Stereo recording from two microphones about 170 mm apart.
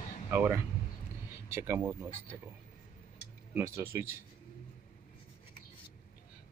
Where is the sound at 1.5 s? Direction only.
15° right (ahead or behind).